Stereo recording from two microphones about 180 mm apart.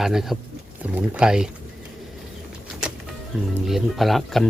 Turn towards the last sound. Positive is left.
turn(degrees=0)  # may be behind; listen again after turning